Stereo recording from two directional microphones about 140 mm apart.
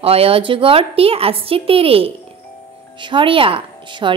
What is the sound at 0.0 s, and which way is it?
A woman's voice, 45° right (ahead or behind).